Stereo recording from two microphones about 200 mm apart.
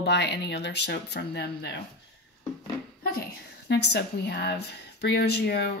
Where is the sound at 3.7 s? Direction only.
60° left (ahead or behind).